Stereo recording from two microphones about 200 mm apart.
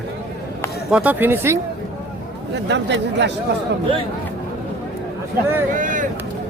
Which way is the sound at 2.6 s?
60° right (ahead or behind).